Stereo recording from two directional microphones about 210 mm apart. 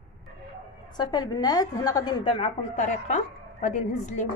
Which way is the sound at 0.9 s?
20° left (ahead or behind).